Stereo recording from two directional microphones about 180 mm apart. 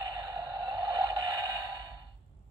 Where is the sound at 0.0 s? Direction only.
25° right (ahead or behind).